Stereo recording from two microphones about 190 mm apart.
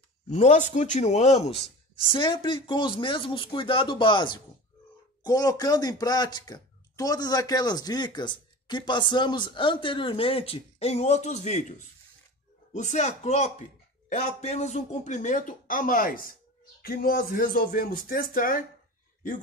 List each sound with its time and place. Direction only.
0.3 s speech: 40° left (ahead or behind)
12.7 s a man's voice: 35° left (ahead or behind)